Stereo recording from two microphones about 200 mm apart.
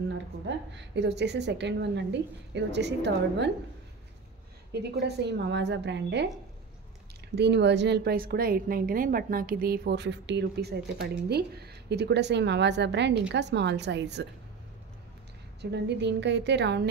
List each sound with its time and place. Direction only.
0.7 s a woman's voice: 60° right (ahead or behind)
5.0 s a woman's voice: 60° right (ahead or behind)
7.3 s a woman's voice: 60° right (ahead or behind)
15.6 s a woman's voice: 60° right (ahead or behind)